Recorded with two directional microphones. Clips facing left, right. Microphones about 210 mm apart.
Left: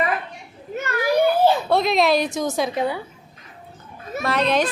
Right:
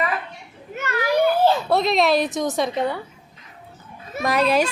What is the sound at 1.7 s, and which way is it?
A woman's voice, centre (ahead or behind).